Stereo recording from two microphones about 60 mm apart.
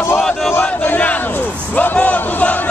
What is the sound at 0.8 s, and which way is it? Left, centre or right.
Speech, left.